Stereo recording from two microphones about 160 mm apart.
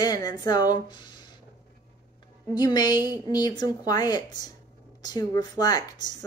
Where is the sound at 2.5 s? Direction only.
25° left (ahead or behind).